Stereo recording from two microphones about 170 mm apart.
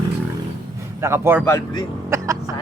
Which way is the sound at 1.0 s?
15° right (ahead or behind).